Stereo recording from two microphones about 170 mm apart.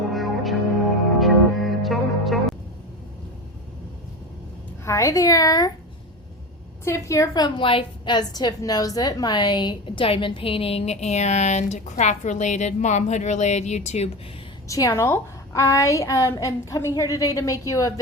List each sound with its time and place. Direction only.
0.1 s music: centre (ahead or behind)
4.9 s a woman's voice: 20° left (ahead or behind)
6.8 s a woman's voice: 15° left (ahead or behind); by 14.1 s 40° left (ahead or behind)
14.7 s a woman's voice: 20° left (ahead or behind)